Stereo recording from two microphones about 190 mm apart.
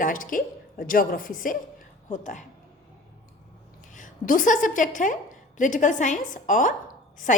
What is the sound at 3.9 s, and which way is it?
A woman's voice, 45° left (ahead or behind).